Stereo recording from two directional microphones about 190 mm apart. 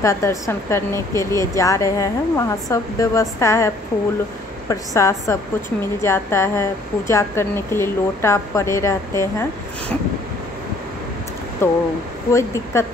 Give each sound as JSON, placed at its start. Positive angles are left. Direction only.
{"t": 0.0, "sound": "a woman's voice", "side_deg": 15}
{"t": 11.6, "sound": "a woman's voice", "side_deg": 15}